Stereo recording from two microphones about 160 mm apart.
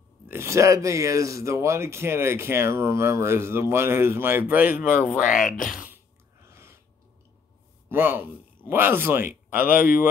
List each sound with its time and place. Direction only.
0.3 s speech: 15° right (ahead or behind)
5.2 s speech: 55° left (ahead or behind)
5.7 s a sound: 5° right (ahead or behind)
7.9 s speech: 15° right (ahead or behind)